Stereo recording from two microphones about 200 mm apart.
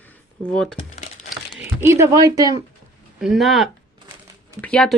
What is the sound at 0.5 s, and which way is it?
Speech, centre (ahead or behind).